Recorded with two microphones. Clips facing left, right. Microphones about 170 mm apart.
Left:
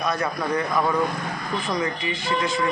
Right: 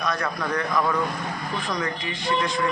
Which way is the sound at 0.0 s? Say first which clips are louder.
Left 2 dB; 5° left (ahead or behind).